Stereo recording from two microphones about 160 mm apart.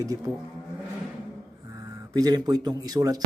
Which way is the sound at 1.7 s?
20° right (ahead or behind).